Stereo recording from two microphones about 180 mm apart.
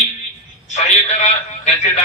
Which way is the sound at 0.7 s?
40° left (ahead or behind).